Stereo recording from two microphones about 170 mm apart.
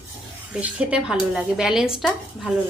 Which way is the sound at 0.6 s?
5° right (ahead or behind).